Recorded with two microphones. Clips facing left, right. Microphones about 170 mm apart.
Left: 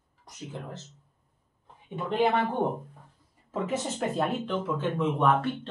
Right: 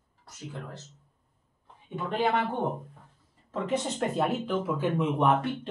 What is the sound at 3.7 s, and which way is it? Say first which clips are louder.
Speech: right 2 dB; centre (ahead or behind).